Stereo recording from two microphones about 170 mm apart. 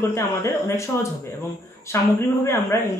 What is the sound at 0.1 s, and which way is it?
Speech, 15° left (ahead or behind).